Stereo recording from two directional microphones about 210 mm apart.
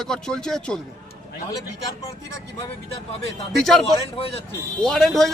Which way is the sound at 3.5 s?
Centre (ahead or behind).